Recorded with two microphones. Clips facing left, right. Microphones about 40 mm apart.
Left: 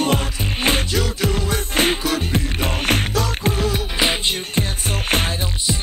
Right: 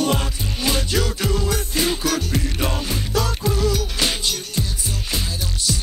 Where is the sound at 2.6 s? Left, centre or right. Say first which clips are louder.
Left 4 dB; left.